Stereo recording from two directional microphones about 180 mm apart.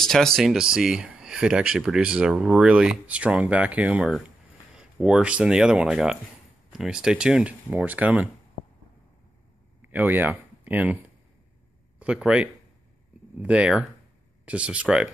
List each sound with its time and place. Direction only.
0.0 s speech: centre (ahead or behind)
9.8 s speech: 10° right (ahead or behind)
12.0 s speech: 5° right (ahead or behind)